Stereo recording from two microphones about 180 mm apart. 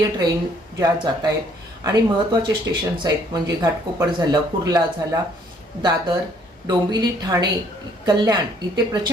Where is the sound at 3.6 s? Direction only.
20° right (ahead or behind).